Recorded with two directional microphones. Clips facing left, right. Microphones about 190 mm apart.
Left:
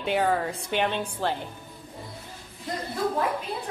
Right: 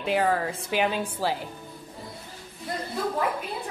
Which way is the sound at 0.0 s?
Centre (ahead or behind).